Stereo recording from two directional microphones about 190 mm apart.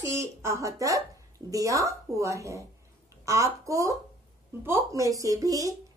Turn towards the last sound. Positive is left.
turn(degrees=-20)  # may be behind; listen again after turning